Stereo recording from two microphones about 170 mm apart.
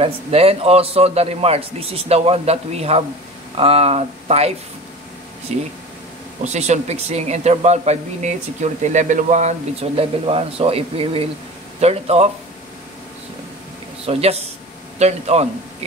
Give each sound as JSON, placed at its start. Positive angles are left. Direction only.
{"t": 0.0, "sound": "speech", "side_deg": -35}
{"t": 14.0, "sound": "speech", "side_deg": -35}